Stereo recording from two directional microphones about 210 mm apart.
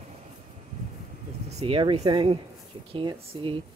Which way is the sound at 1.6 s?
25° right (ahead or behind).